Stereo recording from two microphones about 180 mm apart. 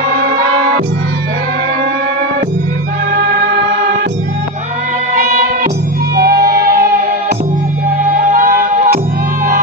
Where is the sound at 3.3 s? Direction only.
55° right (ahead or behind).